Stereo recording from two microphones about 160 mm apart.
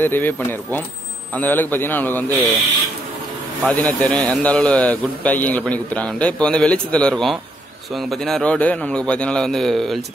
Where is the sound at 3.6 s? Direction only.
5° left (ahead or behind).